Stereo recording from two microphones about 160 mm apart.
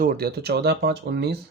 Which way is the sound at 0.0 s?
70° right (ahead or behind).